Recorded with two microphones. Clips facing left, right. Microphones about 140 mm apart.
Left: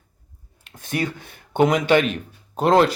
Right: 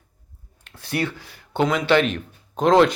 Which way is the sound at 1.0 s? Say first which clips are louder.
Even; 55° left (ahead or behind).